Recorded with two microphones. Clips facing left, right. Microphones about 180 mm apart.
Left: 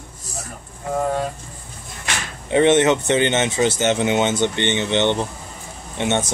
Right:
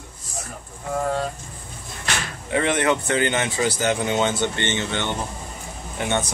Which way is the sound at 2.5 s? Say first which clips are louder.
Left 6 dB; 25° left (ahead or behind).